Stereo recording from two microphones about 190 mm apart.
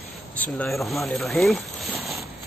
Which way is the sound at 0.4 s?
5° left (ahead or behind).